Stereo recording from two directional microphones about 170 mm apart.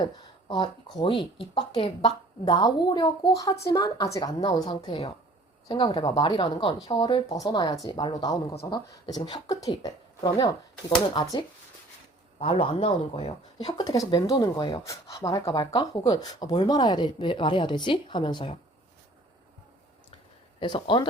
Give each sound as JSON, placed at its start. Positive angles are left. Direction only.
{"t": 0.0, "sound": "a sound", "side_deg": 25}
{"t": 0.9, "sound": "speech", "side_deg": 30}
{"t": 13.7, "sound": "speech", "side_deg": 20}
{"t": 20.6, "sound": "speech", "side_deg": 30}